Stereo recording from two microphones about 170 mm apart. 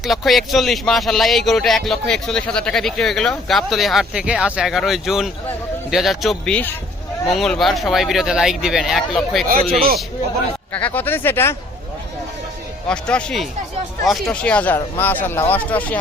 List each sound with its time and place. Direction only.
0.0 s speech: centre (ahead or behind)
9.5 s speech: 55° right (ahead or behind)
10.7 s speech: 10° left (ahead or behind)
12.9 s speech: 5° left (ahead or behind)